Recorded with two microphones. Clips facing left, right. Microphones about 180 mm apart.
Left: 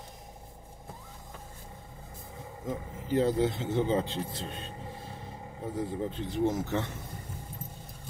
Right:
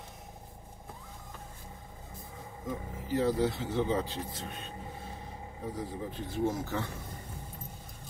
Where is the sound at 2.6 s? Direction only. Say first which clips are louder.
Left 2 dB; 25° left (ahead or behind).